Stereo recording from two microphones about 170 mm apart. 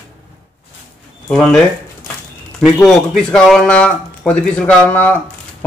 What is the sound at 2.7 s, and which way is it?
A man's voice, 5° left (ahead or behind).